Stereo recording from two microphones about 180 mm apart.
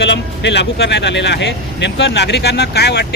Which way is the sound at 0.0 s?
80° left.